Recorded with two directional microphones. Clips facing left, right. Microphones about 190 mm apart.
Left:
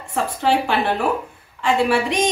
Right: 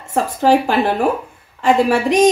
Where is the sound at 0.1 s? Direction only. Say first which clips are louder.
Right 5 dB; 40° right (ahead or behind).